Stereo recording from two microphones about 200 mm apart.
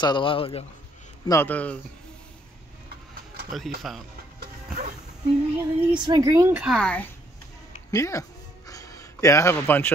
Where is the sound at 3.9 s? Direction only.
Centre (ahead or behind).